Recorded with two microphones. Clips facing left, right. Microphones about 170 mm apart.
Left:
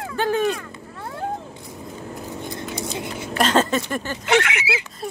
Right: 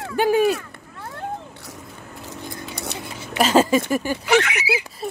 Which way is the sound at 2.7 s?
70° right (ahead or behind).